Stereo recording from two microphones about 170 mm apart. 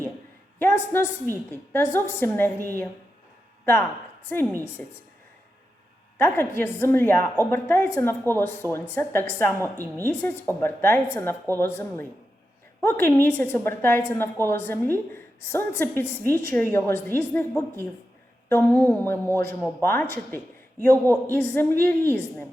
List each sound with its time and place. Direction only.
0.6 s a woman's voice: 15° left (ahead or behind)
4.3 s a woman's voice: 10° left (ahead or behind)
6.1 s a woman's voice: 15° left (ahead or behind)